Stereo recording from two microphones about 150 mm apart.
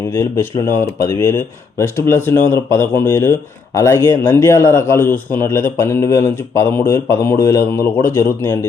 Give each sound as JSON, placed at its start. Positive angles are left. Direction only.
{"t": 0.1, "sound": "speech", "side_deg": 20}